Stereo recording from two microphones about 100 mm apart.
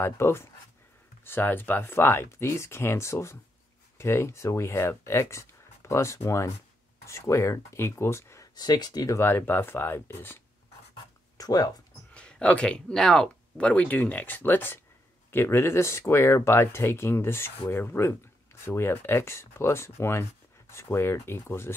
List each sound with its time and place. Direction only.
0.0 s speech: 25° left (ahead or behind)
8.5 s speech: 45° left (ahead or behind)
9.2 s speech: 20° left (ahead or behind)
11.3 s speech: 40° left (ahead or behind)
12.1 s speech: 10° left (ahead or behind)